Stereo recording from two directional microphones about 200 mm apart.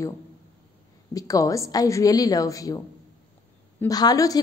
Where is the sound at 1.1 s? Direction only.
15° left (ahead or behind).